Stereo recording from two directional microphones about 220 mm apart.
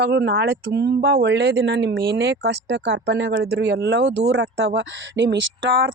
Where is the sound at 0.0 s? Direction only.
50° right (ahead or behind).